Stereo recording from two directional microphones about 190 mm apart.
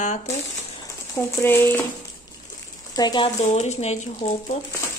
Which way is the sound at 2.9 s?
20° left (ahead or behind).